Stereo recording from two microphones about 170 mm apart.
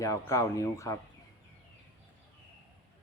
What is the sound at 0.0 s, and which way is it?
Speech, 20° left (ahead or behind).